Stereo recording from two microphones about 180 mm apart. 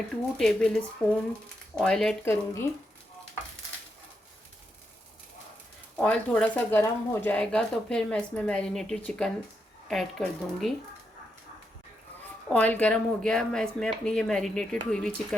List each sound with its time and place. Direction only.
0.3 s speech: 5° left (ahead or behind)
2.2 s speech: 15° left (ahead or behind)
6.0 s speech: 5° left (ahead or behind)
12.5 s speech: 5° left (ahead or behind)